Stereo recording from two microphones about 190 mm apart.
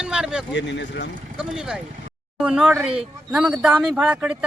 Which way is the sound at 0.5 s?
70° left (ahead or behind).